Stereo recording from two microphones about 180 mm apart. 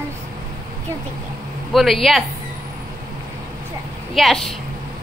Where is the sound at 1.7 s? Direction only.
Centre (ahead or behind).